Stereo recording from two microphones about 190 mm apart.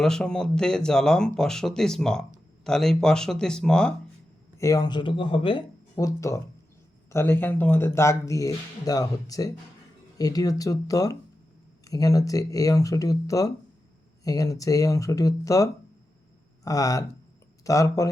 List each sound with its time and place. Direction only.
0.0 s speech: 5° left (ahead or behind)
4.5 s speech: 15° left (ahead or behind)